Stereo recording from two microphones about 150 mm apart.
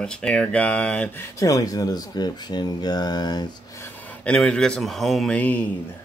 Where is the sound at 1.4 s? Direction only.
25° left (ahead or behind).